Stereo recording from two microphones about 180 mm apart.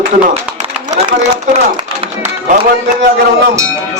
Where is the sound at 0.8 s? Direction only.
40° right (ahead or behind).